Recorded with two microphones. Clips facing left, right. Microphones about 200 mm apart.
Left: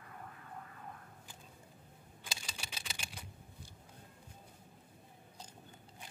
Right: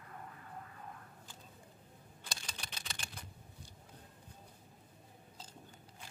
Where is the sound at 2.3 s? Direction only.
5° left (ahead or behind).